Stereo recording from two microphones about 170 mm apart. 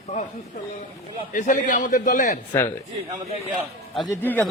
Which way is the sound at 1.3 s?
50° left (ahead or behind).